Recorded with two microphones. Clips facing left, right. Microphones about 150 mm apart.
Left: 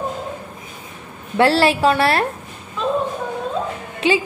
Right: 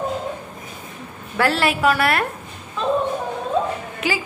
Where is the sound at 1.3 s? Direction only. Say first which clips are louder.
Left 5 dB; 30° left (ahead or behind).